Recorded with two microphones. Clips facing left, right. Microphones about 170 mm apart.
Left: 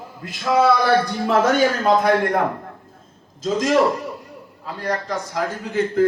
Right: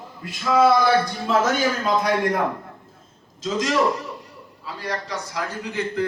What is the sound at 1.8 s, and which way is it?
Speech, 60° left (ahead or behind).